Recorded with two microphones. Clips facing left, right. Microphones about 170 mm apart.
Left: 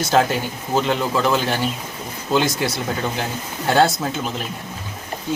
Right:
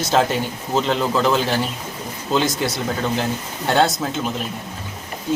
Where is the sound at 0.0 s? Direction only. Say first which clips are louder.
Even; centre (ahead or behind).